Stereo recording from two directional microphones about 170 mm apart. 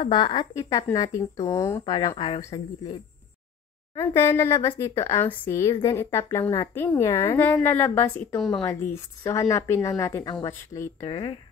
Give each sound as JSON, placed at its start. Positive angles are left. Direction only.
{"t": 0.0, "sound": "speech", "side_deg": 25}
{"t": 3.9, "sound": "speech", "side_deg": 15}
{"t": 8.6, "sound": "speech", "side_deg": 15}